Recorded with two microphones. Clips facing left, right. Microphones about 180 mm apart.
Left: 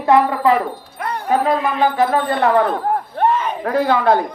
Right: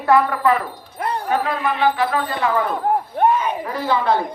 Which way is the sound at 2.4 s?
65° left (ahead or behind).